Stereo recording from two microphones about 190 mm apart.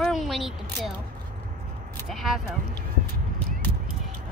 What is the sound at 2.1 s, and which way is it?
Speech, centre (ahead or behind).